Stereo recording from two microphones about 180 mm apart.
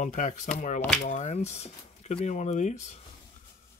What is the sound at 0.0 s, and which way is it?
Speech, 45° left (ahead or behind).